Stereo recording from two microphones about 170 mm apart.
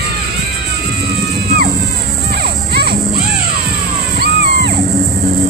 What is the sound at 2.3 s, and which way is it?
Music, 70° right (ahead or behind).